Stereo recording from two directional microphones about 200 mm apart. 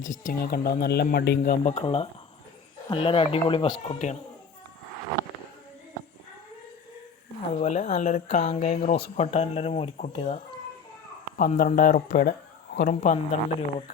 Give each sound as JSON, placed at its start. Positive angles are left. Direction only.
{"t": 0.0, "sound": "speech", "side_deg": 40}
{"t": 1.4, "sound": "speech", "side_deg": 35}
{"t": 7.5, "sound": "speech", "side_deg": 35}
{"t": 13.0, "sound": "speech", "side_deg": 35}